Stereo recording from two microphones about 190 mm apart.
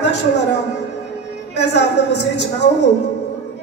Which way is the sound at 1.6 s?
65° left (ahead or behind).